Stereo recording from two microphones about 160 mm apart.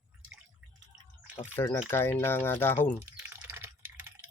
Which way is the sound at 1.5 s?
15° left (ahead or behind).